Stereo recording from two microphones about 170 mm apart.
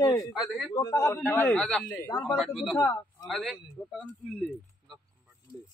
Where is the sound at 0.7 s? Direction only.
15° left (ahead or behind).